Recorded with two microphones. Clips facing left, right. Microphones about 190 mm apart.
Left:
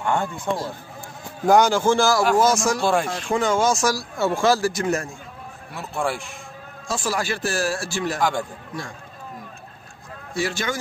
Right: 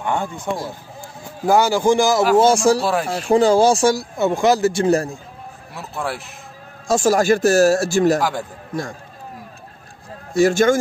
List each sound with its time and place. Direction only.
0.0 s a man's voice: 15° right (ahead or behind)
2.3 s speech: 30° right (ahead or behind)
2.8 s a man's voice: 5° right (ahead or behind)
3.1 s speech: 35° right (ahead or behind)
4.2 s a man's voice: 20° right (ahead or behind); by 5.2 s 35° right (ahead or behind)
5.8 s a man's voice: centre (ahead or behind)
6.9 s speech: 45° right (ahead or behind)
8.2 s a man's voice: 5° right (ahead or behind)
10.3 s speech: 45° right (ahead or behind)